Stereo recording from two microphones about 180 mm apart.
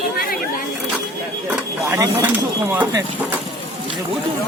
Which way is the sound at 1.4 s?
10° right (ahead or behind).